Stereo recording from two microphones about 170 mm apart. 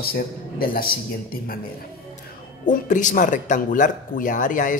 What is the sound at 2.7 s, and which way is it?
Speech, 50° left (ahead or behind).